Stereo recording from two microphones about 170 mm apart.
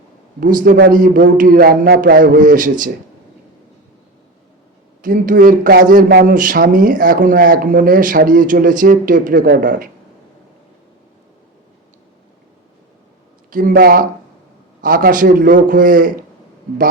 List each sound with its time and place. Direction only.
0.3 s a man's voice: 55° right (ahead or behind)
5.0 s speech: 50° right (ahead or behind)
13.5 s a man's voice: 55° right (ahead or behind)